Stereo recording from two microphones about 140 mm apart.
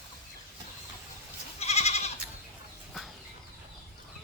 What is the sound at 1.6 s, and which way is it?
Goat, 50° left (ahead or behind).